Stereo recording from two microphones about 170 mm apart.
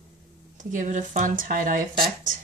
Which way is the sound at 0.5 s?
45° right (ahead or behind).